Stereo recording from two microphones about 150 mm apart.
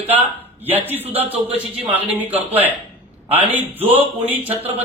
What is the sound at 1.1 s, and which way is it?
Speech, 40° right (ahead or behind).